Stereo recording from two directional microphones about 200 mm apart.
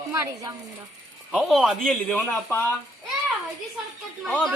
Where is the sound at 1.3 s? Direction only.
Centre (ahead or behind).